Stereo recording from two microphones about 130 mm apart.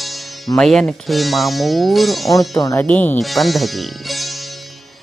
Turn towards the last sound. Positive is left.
turn(degrees=0)  # may be behind; listen again after turning